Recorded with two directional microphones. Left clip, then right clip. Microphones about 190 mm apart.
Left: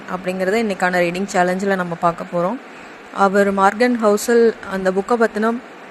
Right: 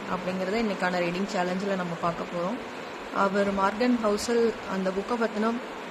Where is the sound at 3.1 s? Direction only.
40° left (ahead or behind).